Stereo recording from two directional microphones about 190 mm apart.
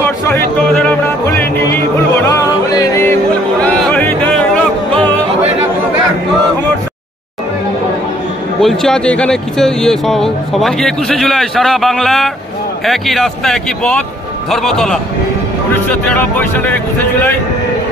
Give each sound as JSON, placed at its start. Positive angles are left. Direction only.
{"t": 2.2, "sound": "music", "side_deg": 15}
{"t": 8.5, "sound": "speech", "side_deg": 0}